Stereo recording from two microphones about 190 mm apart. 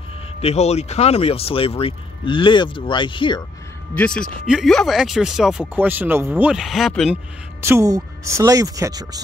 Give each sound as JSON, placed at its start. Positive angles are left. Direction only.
{"t": 0.4, "sound": "speech", "side_deg": 35}
{"t": 3.9, "sound": "speech", "side_deg": 5}
{"t": 7.6, "sound": "speech", "side_deg": -15}